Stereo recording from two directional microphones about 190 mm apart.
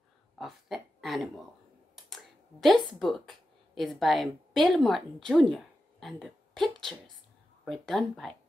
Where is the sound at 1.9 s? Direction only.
Centre (ahead or behind).